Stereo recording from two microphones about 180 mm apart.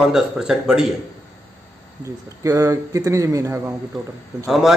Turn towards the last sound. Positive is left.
turn(degrees=0)  # may be behind; listen again after turning